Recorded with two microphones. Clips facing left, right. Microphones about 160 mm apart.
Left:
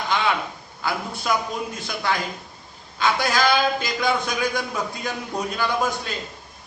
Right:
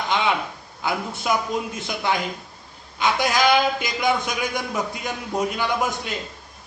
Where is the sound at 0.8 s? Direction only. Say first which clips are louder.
Right 1 dB; 20° right (ahead or behind).